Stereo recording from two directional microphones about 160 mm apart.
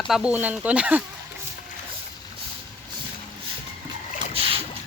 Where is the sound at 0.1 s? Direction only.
5° right (ahead or behind).